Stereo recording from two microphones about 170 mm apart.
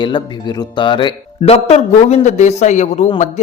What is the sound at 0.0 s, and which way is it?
A man's voice, 25° left (ahead or behind).